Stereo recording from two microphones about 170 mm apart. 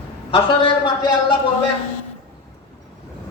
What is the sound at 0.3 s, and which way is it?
Speech, 30° left (ahead or behind).